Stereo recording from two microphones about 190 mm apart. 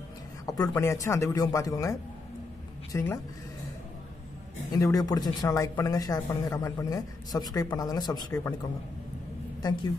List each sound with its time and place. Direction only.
0.5 s speech: 15° left (ahead or behind)
4.7 s speech: 15° left (ahead or behind)
9.6 s a woman's voice: 20° left (ahead or behind)